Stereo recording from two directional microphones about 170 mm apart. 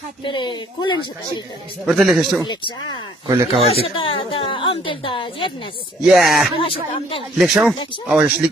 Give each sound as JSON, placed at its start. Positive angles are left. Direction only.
{"t": 0.2, "sound": "speech", "side_deg": 25}
{"t": 1.9, "sound": "a man's voice", "side_deg": 0}
{"t": 2.4, "sound": "speech", "side_deg": 25}
{"t": 3.5, "sound": "speech", "side_deg": -35}
{"t": 3.8, "sound": "speech", "side_deg": 30}
{"t": 6.0, "sound": "a man's voice", "side_deg": 0}
{"t": 6.5, "sound": "speech", "side_deg": 35}
{"t": 7.3, "sound": "a man's voice", "side_deg": 0}